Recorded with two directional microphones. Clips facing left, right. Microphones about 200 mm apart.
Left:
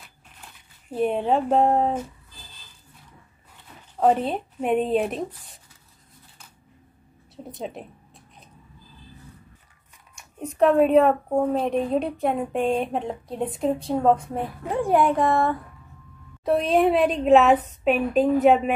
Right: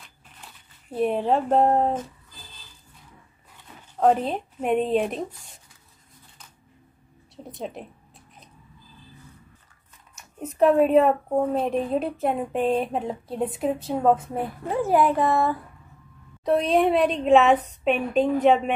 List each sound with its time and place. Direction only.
0.8 s a woman's voice: centre (ahead or behind)
4.0 s a woman's voice: centre (ahead or behind)
7.4 s a woman's voice: centre (ahead or behind)
10.1 s a woman's voice: 5° right (ahead or behind)